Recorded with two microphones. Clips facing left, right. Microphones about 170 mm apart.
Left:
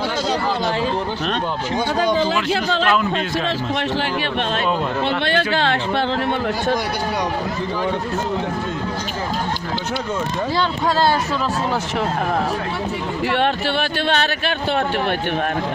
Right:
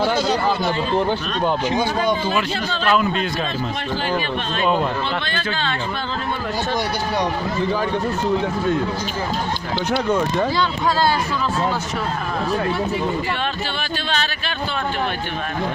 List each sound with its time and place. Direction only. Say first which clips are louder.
5.2 s speech: left 6 dB; 75° left (ahead or behind)
13.4 s music: left 6 dB; 65° left (ahead or behind)